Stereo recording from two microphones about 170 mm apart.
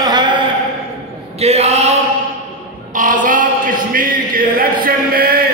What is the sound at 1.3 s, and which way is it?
Speech, 40° right (ahead or behind).